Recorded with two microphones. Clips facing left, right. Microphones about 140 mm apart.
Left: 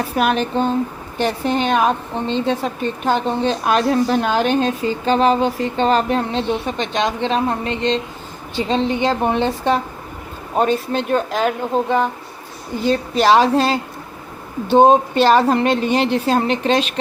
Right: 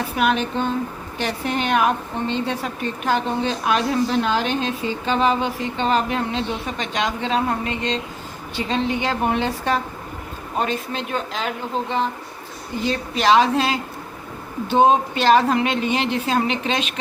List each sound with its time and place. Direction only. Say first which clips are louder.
0.2 s a woman's voice: left 3 dB; 40° left (ahead or behind)
10.6 s a woman's voice: left 7 dB; 40° left (ahead or behind)